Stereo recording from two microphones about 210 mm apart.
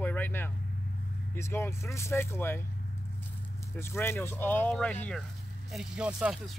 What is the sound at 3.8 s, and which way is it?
Speech, 10° left (ahead or behind).